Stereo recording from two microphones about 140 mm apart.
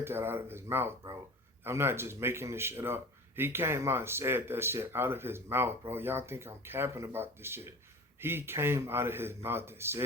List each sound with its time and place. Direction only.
0.0 s speech: 15° right (ahead or behind)